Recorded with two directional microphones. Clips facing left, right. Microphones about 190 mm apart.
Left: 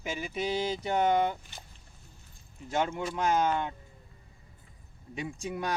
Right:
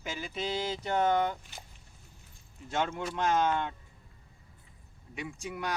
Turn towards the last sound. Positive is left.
turn(degrees=30)  # may be behind; listen again after turning